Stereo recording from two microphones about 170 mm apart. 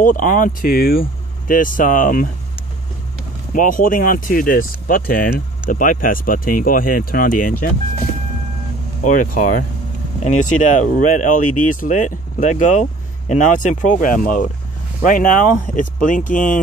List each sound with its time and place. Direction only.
0.0 s speech: 50° left (ahead or behind)
1.5 s speech: 50° left (ahead or behind)
3.5 s speech: 50° left (ahead or behind)
9.0 s speech: 50° left (ahead or behind)